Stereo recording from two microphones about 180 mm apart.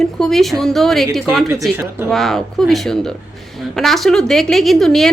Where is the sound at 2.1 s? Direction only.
Centre (ahead or behind).